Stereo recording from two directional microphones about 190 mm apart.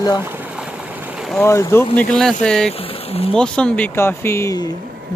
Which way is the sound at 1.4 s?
15° left (ahead or behind).